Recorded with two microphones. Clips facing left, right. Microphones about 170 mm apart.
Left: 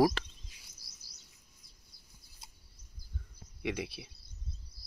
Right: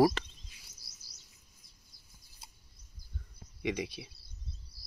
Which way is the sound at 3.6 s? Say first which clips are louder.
Right 2 dB; 5° left (ahead or behind).